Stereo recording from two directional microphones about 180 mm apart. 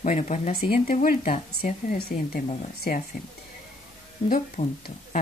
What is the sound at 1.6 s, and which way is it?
Speech, 55° left (ahead or behind).